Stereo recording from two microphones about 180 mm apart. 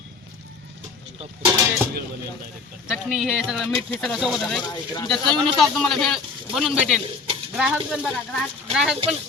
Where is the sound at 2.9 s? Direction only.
5° right (ahead or behind).